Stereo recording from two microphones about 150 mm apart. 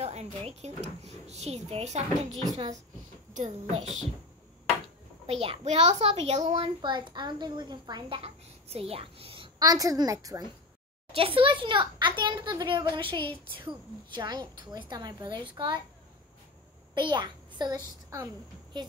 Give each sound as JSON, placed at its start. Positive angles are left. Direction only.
{"t": 0.0, "sound": "a child's voice", "side_deg": -45}
{"t": 8.2, "sound": "a child's voice", "side_deg": -40}
{"t": 9.7, "sound": "a woman's voice", "side_deg": -25}
{"t": 11.1, "sound": "a child's voice", "side_deg": -35}
{"t": 16.9, "sound": "a child's voice", "side_deg": -30}